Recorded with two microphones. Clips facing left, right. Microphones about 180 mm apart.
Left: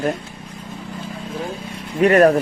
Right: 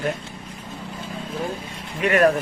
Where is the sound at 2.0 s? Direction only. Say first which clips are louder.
Left 5 dB; 40° left (ahead or behind).